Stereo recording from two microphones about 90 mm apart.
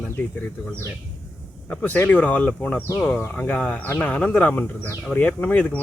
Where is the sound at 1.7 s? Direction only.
15° left (ahead or behind).